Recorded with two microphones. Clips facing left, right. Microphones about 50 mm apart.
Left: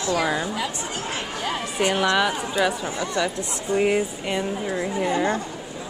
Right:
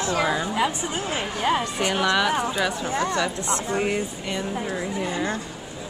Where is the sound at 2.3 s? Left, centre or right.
Right.